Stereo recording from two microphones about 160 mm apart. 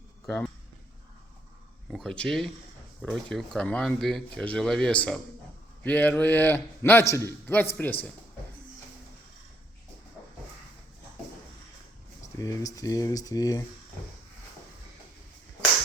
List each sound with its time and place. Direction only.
0.3 s a man's voice: 10° left (ahead or behind)
1.9 s a man's voice: centre (ahead or behind)
12.4 s speech: 20° left (ahead or behind)